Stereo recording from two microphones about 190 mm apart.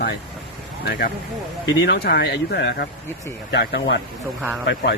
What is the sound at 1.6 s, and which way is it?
Speech, 65° left (ahead or behind).